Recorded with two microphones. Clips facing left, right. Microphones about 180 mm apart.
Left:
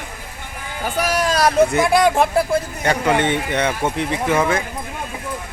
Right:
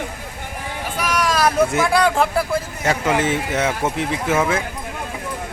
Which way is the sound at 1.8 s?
20° left (ahead or behind).